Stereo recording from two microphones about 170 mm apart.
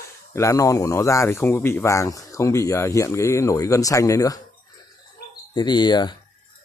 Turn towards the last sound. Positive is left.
turn(degrees=25)  # may be behind; listen again after turning